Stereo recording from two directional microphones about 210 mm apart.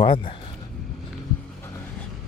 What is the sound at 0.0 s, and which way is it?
Speech, 25° left (ahead or behind).